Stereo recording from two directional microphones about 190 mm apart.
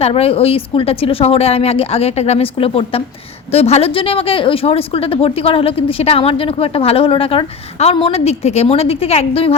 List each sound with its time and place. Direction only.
0.0 s a woman's voice: 30° left (ahead or behind)